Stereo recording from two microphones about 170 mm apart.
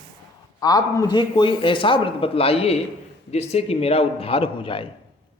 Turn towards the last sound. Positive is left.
turn(degrees=30)  # may be behind; listen again after turning